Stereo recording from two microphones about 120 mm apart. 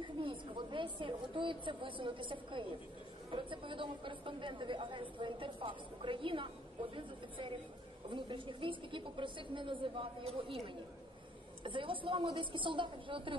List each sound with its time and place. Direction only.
0.2 s a woman's voice: 45° right (ahead or behind)
8.1 s speech: 45° right (ahead or behind)
11.6 s speech: 45° right (ahead or behind)